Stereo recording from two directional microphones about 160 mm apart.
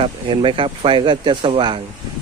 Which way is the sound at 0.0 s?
30° right (ahead or behind).